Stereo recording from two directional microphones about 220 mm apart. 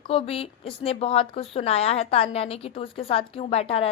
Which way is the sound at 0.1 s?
25° left (ahead or behind).